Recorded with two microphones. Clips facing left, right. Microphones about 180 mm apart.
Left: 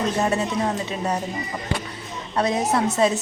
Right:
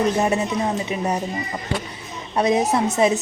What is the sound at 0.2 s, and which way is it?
Speech, 15° right (ahead or behind).